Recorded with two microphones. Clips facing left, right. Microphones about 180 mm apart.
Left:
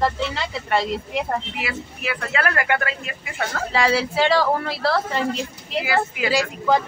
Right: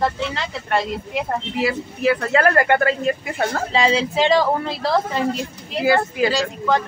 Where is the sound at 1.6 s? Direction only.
40° right (ahead or behind).